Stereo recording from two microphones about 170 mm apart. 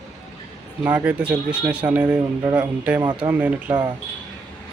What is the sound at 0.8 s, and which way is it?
Speech, 10° right (ahead or behind).